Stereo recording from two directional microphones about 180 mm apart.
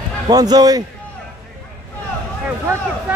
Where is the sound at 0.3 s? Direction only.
20° right (ahead or behind).